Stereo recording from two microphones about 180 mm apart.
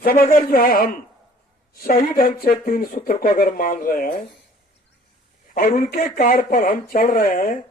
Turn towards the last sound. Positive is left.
turn(degrees=50)  # may be behind; listen again after turning